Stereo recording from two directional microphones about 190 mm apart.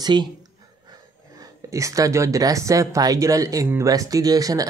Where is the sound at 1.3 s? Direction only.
15° right (ahead or behind).